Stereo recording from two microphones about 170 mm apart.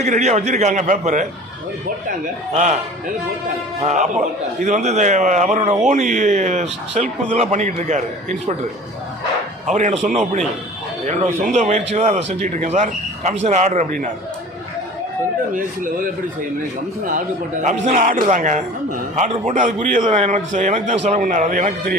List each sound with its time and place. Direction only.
0.0 s speech: 40° right (ahead or behind)
3.8 s speech: 45° right (ahead or behind)
9.6 s speech: 45° right (ahead or behind)
17.1 s speech: 50° right (ahead or behind)